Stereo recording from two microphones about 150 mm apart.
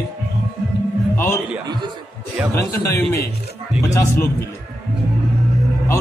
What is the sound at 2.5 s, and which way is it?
Speech, 20° left (ahead or behind).